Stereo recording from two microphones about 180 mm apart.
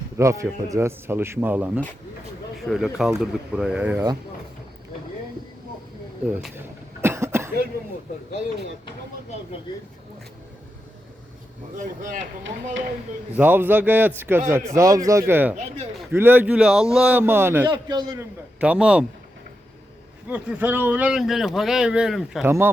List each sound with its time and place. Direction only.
0.2 s a man's voice: 15° right (ahead or behind)
7.0 s cough: 15° right (ahead or behind)
11.8 s speech: 45° right (ahead or behind)
13.3 s a man's voice: 10° right (ahead or behind)
17.7 s a man's voice: 25° right (ahead or behind)
18.6 s speech: 5° right (ahead or behind)
20.2 s speech: 10° right (ahead or behind)